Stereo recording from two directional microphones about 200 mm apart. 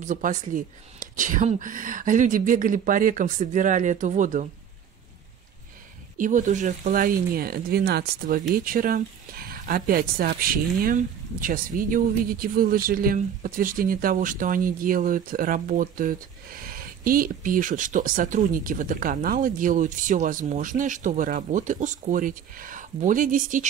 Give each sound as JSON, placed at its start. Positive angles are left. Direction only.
{"t": 0.0, "sound": "speech", "side_deg": -40}
{"t": 6.1, "sound": "speech", "side_deg": -40}